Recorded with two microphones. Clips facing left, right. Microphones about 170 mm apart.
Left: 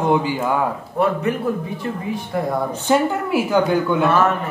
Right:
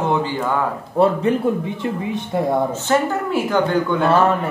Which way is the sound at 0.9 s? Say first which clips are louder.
Right 4 dB; 30° right (ahead or behind).